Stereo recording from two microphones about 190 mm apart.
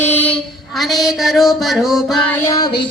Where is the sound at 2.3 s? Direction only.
15° left (ahead or behind).